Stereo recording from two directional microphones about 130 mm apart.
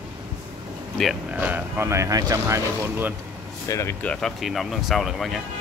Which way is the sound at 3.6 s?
20° left (ahead or behind).